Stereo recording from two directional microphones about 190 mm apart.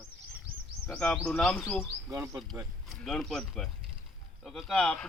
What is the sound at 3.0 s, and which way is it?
Speech, 5° left (ahead or behind).